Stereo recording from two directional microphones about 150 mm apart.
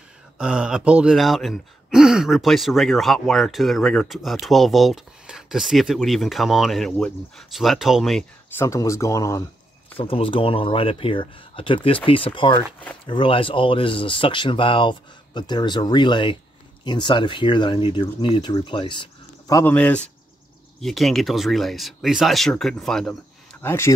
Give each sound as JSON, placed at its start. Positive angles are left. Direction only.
{"t": 0.4, "sound": "speech", "side_deg": -5}
{"t": 8.5, "sound": "speech", "side_deg": 20}
{"t": 9.9, "sound": "speech", "side_deg": 40}
{"t": 19.6, "sound": "speech", "side_deg": 10}
{"t": 23.6, "sound": "speech", "side_deg": 15}